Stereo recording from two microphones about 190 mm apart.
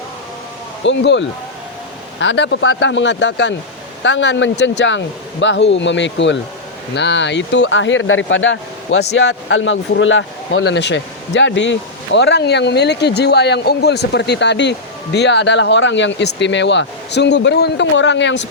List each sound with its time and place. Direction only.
0.9 s speech: 70° left (ahead or behind)